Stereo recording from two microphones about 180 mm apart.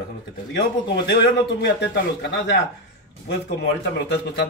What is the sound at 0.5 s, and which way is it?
Speech, 70° left (ahead or behind).